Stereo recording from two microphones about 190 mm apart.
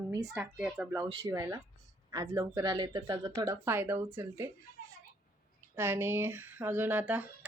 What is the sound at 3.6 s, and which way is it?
Speech, 10° right (ahead or behind).